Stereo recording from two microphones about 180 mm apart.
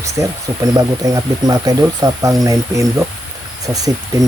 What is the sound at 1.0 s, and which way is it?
Speech, 20° right (ahead or behind).